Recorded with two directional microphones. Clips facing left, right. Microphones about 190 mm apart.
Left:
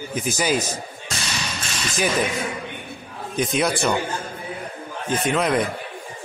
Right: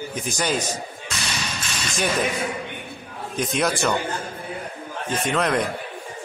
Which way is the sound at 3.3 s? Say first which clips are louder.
Left 2 dB; centre (ahead or behind).